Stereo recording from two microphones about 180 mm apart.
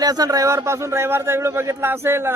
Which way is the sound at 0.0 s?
20° right (ahead or behind).